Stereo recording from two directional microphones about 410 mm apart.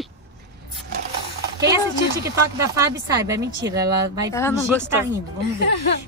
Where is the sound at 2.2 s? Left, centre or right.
Centre.